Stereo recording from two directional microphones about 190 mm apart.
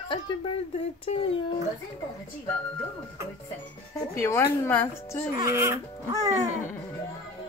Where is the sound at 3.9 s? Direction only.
15° left (ahead or behind).